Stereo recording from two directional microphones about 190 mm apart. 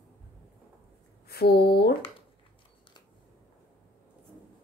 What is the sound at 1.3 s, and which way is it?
Speech, 55° left (ahead or behind).